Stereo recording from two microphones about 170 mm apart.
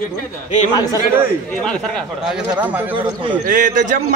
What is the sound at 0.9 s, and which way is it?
Speech, 10° right (ahead or behind).